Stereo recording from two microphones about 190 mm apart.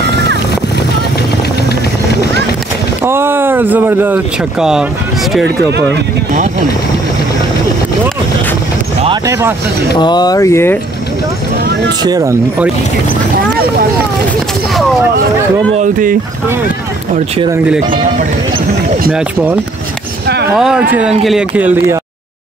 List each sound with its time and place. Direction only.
3.0 s speech: 10° right (ahead or behind)
5.4 s speech: 65° right (ahead or behind)
9.2 s a man's voice: 15° right (ahead or behind)
9.9 s speech: 20° left (ahead or behind)
12.0 s speech: 20° right (ahead or behind)
15.8 s speech: 45° right (ahead or behind)
19.1 s a man's voice: 10° right (ahead or behind)